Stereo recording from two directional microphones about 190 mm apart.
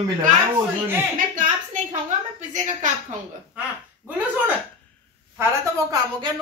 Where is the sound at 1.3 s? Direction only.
40° right (ahead or behind).